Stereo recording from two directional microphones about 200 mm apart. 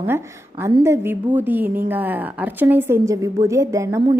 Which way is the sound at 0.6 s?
15° right (ahead or behind).